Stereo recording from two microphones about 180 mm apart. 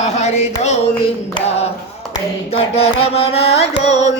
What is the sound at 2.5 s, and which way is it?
Music, 35° left (ahead or behind).